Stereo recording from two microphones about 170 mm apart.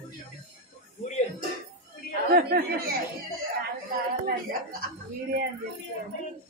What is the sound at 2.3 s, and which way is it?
Speech, 65° right (ahead or behind).